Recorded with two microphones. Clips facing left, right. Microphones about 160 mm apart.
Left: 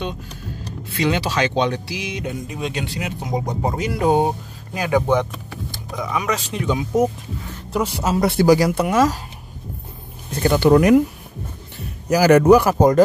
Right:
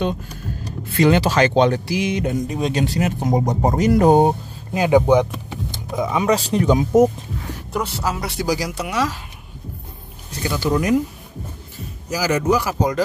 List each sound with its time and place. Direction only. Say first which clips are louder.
0.9 s speech: right 5 dB; 50° right (ahead or behind)
4.7 s speech: right 4 dB; 20° right (ahead or behind); by 7.1 s 40° right (ahead or behind)
7.7 s speech: left 3 dB; 10° left (ahead or behind)
8.2 s speech: left 12 dB; 55° left (ahead or behind)
10.3 s speech: left 7 dB; 55° left (ahead or behind)
12.1 s speech: left 7 dB; 60° left (ahead or behind)